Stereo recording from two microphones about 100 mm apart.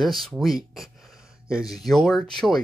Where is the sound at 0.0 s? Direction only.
Centre (ahead or behind).